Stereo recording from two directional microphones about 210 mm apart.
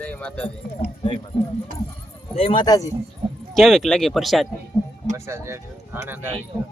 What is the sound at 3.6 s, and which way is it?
Speech, centre (ahead or behind).